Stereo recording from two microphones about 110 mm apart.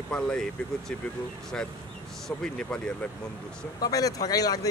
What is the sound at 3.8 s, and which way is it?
Speech, 35° left (ahead or behind).